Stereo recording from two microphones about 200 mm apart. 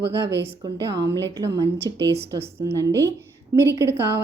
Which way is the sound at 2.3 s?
15° right (ahead or behind).